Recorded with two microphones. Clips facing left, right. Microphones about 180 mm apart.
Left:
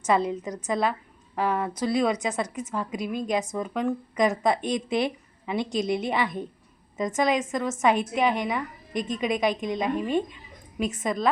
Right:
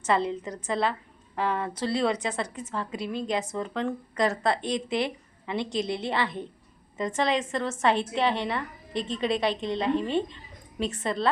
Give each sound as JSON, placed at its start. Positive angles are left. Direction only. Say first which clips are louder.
{"t": 0.3, "sound": "a woman's voice", "louder": "left 2 dB", "side_deg": 15}